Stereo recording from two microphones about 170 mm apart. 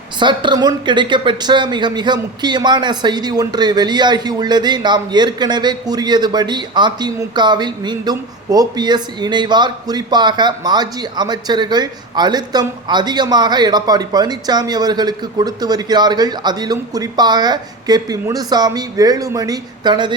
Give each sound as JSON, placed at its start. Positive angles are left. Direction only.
{"t": 0.2, "sound": "a woman's voice", "side_deg": -25}